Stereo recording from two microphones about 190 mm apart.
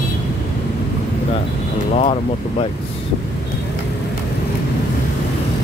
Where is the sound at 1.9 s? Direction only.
30° left (ahead or behind).